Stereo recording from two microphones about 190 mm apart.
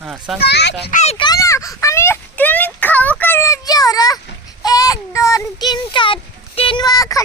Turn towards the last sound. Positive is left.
turn(degrees=15)  # may be behind; listen again after turning